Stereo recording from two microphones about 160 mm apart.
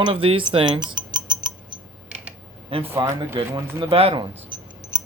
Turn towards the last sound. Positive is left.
turn(degrees=-30)  # may be behind; listen again after turning